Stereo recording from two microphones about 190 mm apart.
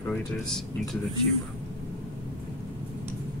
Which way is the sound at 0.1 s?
5° left (ahead or behind).